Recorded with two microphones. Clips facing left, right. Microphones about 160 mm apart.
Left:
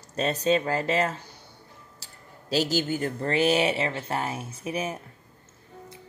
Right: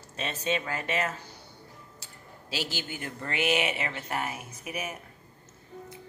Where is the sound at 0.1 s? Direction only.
40° left (ahead or behind).